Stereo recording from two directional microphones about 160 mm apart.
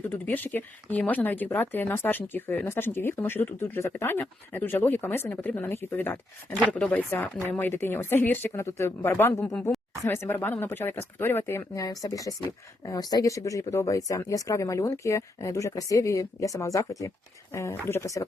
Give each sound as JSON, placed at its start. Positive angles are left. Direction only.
{"t": 0.1, "sound": "speech", "side_deg": 10}